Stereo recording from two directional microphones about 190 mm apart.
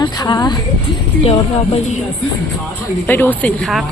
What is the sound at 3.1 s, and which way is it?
Speech, 10° left (ahead or behind).